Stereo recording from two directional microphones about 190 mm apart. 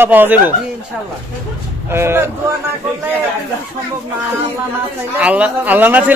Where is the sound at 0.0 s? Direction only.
10° right (ahead or behind).